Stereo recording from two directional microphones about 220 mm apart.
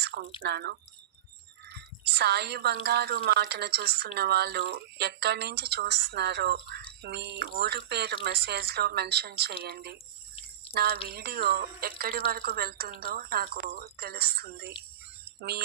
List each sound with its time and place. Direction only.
0.0 s drip: 50° right (ahead or behind)
0.4 s a woman's voice: 50° right (ahead or behind)
15.2 s a sound: 45° right (ahead or behind)